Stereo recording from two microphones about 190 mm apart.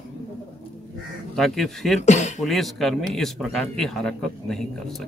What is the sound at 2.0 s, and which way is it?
Speech, 40° left (ahead or behind).